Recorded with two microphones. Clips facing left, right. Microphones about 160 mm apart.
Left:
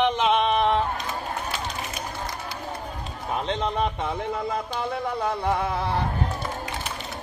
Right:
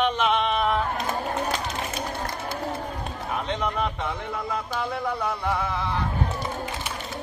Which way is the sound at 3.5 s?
25° left (ahead or behind).